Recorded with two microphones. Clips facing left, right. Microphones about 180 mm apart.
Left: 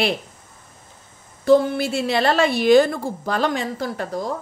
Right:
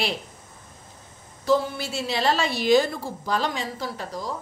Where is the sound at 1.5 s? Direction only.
55° left (ahead or behind).